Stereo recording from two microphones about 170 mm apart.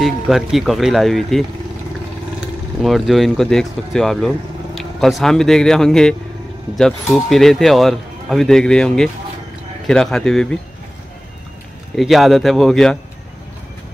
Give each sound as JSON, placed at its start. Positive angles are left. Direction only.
{"t": 0.0, "sound": "speech", "side_deg": 0}
{"t": 2.8, "sound": "speech", "side_deg": 0}
{"t": 11.9, "sound": "speech", "side_deg": 0}